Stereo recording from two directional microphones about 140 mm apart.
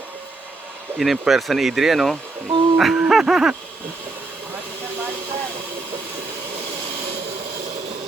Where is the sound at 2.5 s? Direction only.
35° right (ahead or behind).